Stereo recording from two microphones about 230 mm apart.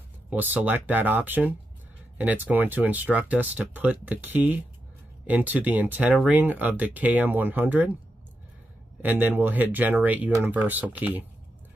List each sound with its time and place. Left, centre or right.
0.3 s speech: centre
9.0 s speech: centre